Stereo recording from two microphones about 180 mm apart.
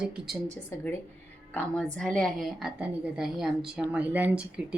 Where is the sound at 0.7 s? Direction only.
15° left (ahead or behind); by 4.7 s 5° right (ahead or behind).